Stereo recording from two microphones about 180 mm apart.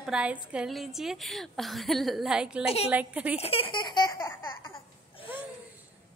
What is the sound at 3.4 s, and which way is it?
Baby laughter, 30° left (ahead or behind).